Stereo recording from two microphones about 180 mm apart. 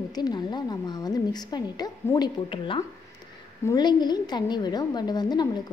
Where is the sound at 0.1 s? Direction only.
25° left (ahead or behind).